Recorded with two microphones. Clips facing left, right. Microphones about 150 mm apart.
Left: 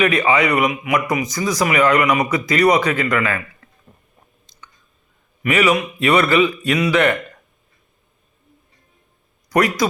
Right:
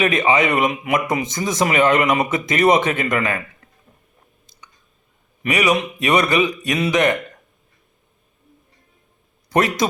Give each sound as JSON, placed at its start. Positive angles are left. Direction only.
{"t": 0.0, "sound": "a man's voice", "side_deg": -20}
{"t": 3.6, "sound": "a sound", "side_deg": -15}
{"t": 5.4, "sound": "a man's voice", "side_deg": -20}
{"t": 9.5, "sound": "a man's voice", "side_deg": -25}